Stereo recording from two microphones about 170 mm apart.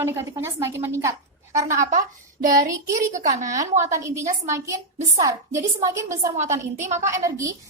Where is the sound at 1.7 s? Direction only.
50° right (ahead or behind).